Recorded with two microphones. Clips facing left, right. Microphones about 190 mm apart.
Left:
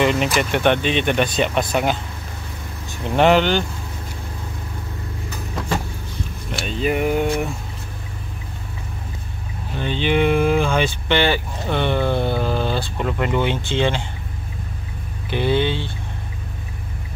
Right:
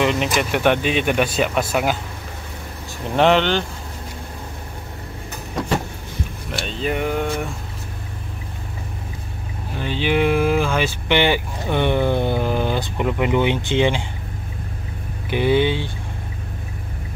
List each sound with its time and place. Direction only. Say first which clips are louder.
0.0 s speech: left 1 dB; centre (ahead or behind)
3.2 s speech: left 1 dB; 5° left (ahead or behind)
6.6 s a sound: left 3 dB; 5° left (ahead or behind)
9.8 s speech: left 1 dB; 5° right (ahead or behind)
11.1 s speech: right 1 dB; 15° right (ahead or behind)
15.2 s speech: right 2 dB; 15° right (ahead or behind)